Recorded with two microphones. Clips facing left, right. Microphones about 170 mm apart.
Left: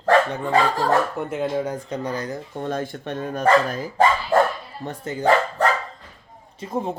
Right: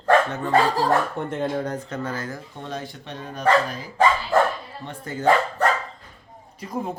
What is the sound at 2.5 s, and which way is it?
Speech, 50° left (ahead or behind).